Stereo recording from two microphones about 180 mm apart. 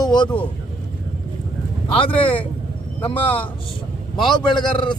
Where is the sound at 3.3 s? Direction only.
10° left (ahead or behind).